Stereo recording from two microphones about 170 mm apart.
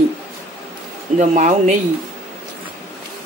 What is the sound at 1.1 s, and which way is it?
Speech, 45° right (ahead or behind).